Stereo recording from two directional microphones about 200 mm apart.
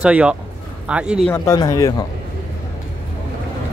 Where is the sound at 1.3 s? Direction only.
15° left (ahead or behind).